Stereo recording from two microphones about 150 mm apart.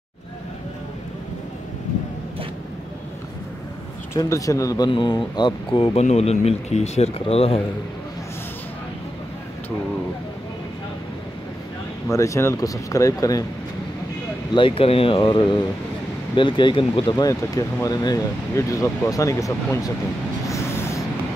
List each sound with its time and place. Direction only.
4.1 s speech: 20° left (ahead or behind); by 7.6 s 40° left (ahead or behind)
12.1 s speech: 20° left (ahead or behind)
14.5 s speech: 35° left (ahead or behind)
17.1 s speech: 25° left (ahead or behind)
20.4 s vehicle: 20° left (ahead or behind)